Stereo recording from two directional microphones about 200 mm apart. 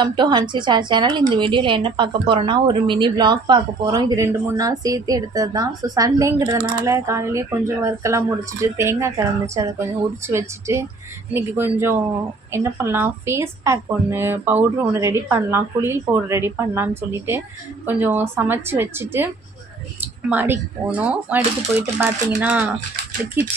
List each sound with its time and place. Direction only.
0.0 s a woman's voice: 20° right (ahead or behind)
10.2 s a woman's voice: 15° right (ahead or behind)